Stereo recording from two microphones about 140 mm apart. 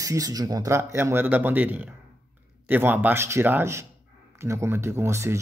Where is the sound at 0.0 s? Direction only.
25° right (ahead or behind).